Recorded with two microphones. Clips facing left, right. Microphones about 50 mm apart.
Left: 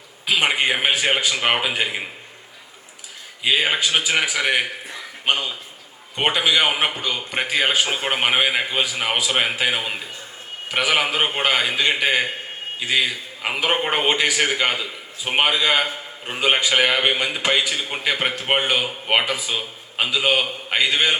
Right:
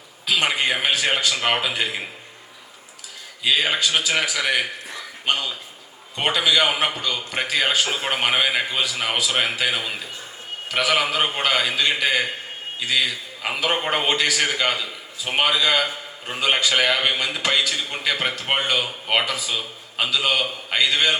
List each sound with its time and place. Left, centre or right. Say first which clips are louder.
0.3 s a man's voice: left 2 dB; centre
3.4 s a man's voice: left 1 dB; centre